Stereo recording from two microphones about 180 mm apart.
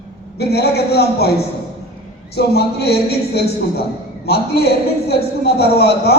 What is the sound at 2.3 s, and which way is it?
Speech, 65° left (ahead or behind).